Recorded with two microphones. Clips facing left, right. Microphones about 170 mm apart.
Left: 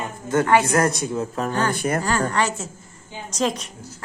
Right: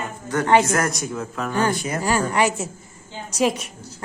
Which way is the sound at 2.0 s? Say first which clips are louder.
Right 2 dB; 10° right (ahead or behind).